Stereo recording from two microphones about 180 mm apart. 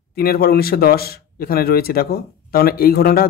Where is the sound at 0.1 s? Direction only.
55° left (ahead or behind).